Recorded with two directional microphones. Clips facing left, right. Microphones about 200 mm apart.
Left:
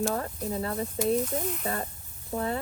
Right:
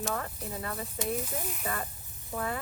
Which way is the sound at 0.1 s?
30° left (ahead or behind).